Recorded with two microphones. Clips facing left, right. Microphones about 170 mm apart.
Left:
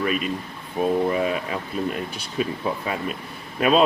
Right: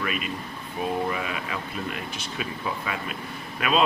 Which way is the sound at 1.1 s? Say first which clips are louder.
Left 7 dB; 40° left (ahead or behind).